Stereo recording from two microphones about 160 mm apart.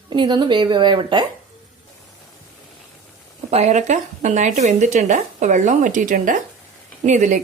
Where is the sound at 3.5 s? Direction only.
45° right (ahead or behind).